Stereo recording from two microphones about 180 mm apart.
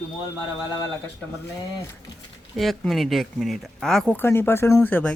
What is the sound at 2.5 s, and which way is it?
Speech, centre (ahead or behind).